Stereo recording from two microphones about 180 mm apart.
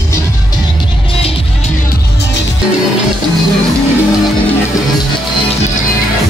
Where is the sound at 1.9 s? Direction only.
70° left (ahead or behind).